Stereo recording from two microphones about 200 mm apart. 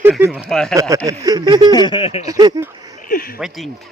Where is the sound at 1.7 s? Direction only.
25° left (ahead or behind).